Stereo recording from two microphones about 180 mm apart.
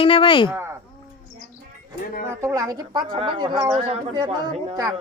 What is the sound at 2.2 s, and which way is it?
A woman's voice, 15° right (ahead or behind).